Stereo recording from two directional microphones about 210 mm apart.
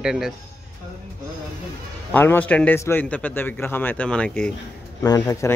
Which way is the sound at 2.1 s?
10° left (ahead or behind).